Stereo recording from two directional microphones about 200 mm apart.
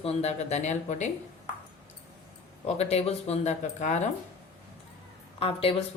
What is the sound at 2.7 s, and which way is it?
A woman's voice, 30° left (ahead or behind).